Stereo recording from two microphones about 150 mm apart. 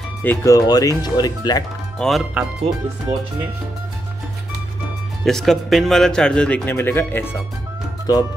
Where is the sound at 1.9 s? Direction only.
Centre (ahead or behind).